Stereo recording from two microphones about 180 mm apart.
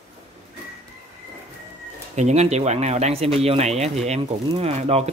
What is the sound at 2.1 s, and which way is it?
Speech, 40° right (ahead or behind).